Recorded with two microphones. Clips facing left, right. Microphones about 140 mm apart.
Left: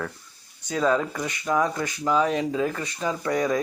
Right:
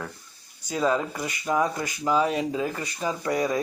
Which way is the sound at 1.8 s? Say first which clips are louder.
Left 1 dB; 10° right (ahead or behind).